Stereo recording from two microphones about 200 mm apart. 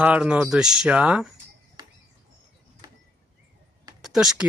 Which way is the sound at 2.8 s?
20° right (ahead or behind).